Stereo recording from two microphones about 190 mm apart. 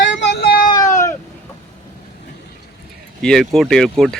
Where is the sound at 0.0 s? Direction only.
70° left (ahead or behind).